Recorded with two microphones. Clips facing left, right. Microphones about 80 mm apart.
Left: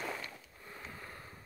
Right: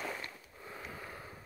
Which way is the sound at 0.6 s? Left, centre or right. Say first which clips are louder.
Right 3 dB; centre.